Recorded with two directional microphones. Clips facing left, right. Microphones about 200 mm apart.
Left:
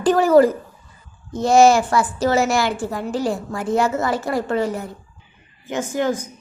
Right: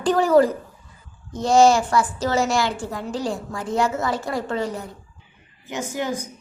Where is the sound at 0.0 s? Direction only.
5° left (ahead or behind).